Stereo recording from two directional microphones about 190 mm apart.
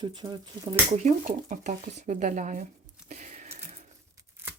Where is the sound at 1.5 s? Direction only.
40° right (ahead or behind).